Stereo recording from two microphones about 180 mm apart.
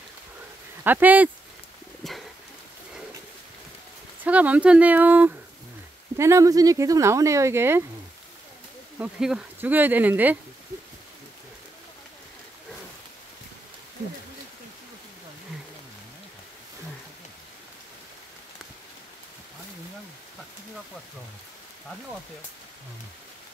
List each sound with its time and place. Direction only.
0.8 s speech: 10° right (ahead or behind)
2.0 s a sound: centre (ahead or behind)
4.2 s speech: 10° right (ahead or behind)
8.9 s speech: 5° right (ahead or behind)